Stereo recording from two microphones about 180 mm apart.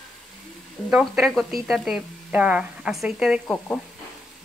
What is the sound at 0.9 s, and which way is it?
Speech, centre (ahead or behind).